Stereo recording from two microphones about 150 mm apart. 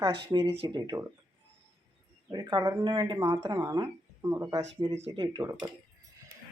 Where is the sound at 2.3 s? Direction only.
25° right (ahead or behind).